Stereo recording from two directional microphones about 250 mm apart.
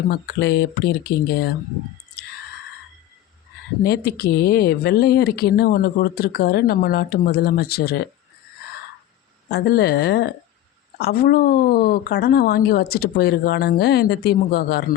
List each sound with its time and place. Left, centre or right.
0.1 s speech: left
3.8 s speech: left
9.5 s speech: left